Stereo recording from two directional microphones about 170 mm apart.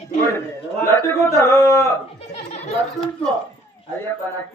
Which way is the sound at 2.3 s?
40° left (ahead or behind).